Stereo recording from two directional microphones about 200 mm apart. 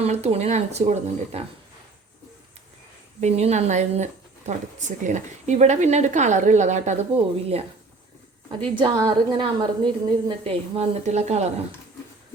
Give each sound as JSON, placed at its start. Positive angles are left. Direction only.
{"t": 0.0, "sound": "speech", "side_deg": -30}
{"t": 3.2, "sound": "a woman's voice", "side_deg": -30}